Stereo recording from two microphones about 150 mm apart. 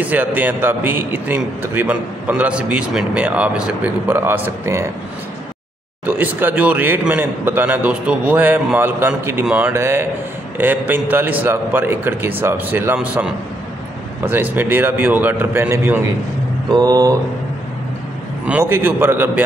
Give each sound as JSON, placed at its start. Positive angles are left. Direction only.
{"t": 0.0, "sound": "a man's voice", "side_deg": -10}
{"t": 6.0, "sound": "a man's voice", "side_deg": -10}
{"t": 16.7, "sound": "mantra", "side_deg": -25}
{"t": 18.6, "sound": "a man's voice", "side_deg": -15}